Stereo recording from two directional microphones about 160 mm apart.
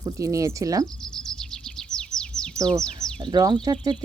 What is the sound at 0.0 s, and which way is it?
Speech, 20° right (ahead or behind).